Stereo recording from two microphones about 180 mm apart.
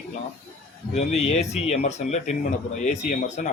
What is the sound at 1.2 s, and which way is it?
Speech, 35° left (ahead or behind).